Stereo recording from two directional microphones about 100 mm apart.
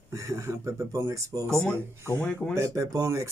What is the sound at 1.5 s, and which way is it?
Speech, 5° left (ahead or behind).